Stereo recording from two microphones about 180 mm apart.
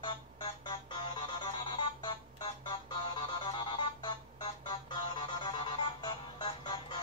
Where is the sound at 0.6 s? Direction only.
25° left (ahead or behind).